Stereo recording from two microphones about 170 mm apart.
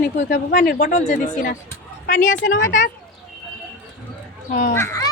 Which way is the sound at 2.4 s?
90° left.